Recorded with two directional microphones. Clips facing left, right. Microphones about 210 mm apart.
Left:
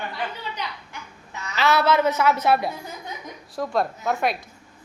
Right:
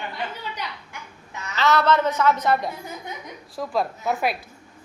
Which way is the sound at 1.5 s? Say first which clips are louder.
Even; 10° left (ahead or behind).